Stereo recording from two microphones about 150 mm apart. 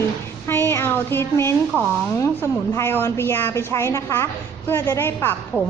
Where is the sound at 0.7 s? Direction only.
15° left (ahead or behind).